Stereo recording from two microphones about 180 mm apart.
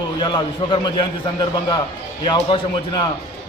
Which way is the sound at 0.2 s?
25° left (ahead or behind).